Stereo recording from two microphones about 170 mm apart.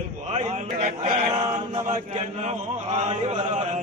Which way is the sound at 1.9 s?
40° right (ahead or behind).